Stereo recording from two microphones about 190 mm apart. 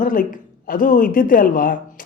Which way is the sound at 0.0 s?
45° left (ahead or behind).